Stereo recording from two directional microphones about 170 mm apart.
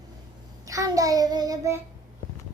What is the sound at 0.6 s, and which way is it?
A child's voice, 20° right (ahead or behind).